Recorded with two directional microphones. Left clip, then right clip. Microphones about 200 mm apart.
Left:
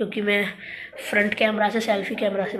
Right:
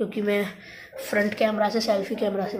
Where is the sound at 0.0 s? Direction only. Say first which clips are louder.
Left 2 dB; 5° right (ahead or behind).